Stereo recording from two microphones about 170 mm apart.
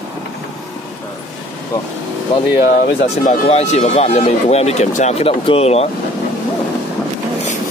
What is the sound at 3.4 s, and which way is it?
Speech, 40° left (ahead or behind).